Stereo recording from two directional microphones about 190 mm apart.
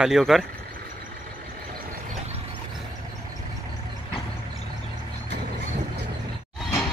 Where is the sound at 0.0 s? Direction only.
Centre (ahead or behind).